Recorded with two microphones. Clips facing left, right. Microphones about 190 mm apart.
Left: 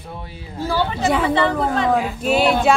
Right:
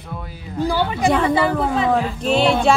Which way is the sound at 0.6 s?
15° right (ahead or behind).